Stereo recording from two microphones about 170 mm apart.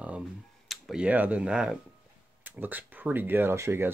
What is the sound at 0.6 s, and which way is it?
Speech, 5° right (ahead or behind).